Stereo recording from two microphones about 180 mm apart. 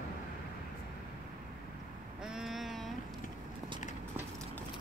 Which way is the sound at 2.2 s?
5° right (ahead or behind).